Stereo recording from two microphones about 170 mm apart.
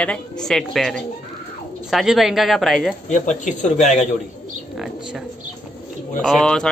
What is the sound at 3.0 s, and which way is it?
Speech, 45° left (ahead or behind).